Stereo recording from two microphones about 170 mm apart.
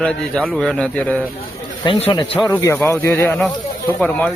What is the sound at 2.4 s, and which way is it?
Speech, 15° left (ahead or behind).